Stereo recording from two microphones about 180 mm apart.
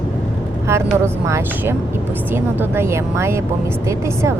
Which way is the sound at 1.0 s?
15° right (ahead or behind).